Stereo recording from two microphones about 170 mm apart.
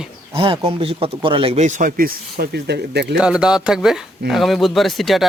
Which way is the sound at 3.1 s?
5° right (ahead or behind).